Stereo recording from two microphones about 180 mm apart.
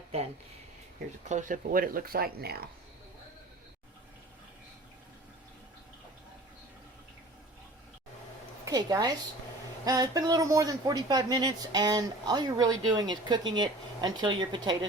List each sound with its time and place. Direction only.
1.3 s speech: 45° right (ahead or behind)
8.6 s speech: 20° right (ahead or behind)